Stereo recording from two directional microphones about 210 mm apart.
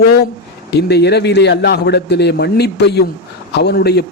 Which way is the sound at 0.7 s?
50° left (ahead or behind).